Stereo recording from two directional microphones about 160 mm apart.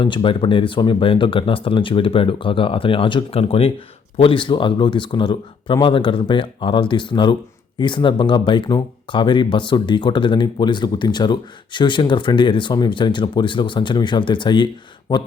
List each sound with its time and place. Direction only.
0.0 s speech: 30° left (ahead or behind)